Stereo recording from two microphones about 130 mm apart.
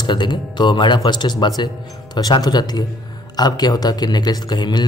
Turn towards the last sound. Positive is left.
turn(degrees=35)  # may be behind; listen again after turning